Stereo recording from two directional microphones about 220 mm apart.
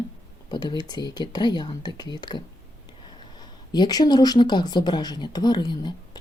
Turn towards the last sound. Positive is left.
turn(degrees=20)  # may be behind; listen again after turning